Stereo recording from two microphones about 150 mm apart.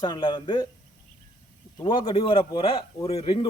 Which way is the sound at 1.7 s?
35° left (ahead or behind).